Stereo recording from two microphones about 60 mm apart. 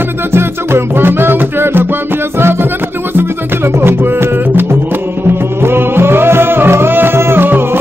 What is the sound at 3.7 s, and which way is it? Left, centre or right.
Music, right.